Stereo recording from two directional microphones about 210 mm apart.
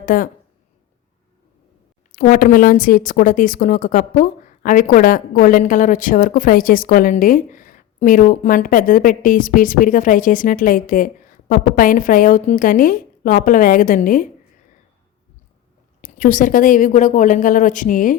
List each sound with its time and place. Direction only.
0.0 s a woman's voice: 40° left (ahead or behind)
2.1 s a woman's voice: 40° left (ahead or behind)
16.0 s a woman's voice: 40° left (ahead or behind)